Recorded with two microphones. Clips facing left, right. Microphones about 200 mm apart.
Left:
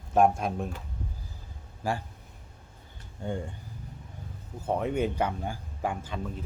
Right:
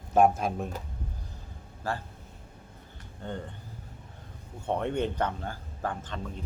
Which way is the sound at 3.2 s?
10° left (ahead or behind).